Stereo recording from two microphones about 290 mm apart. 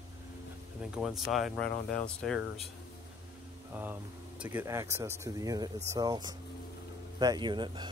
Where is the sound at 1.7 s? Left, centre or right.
Left.